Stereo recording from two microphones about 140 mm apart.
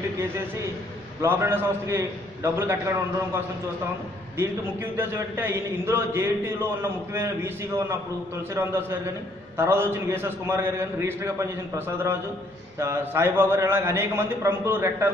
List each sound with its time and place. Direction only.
1.2 s a man's voice: 15° right (ahead or behind)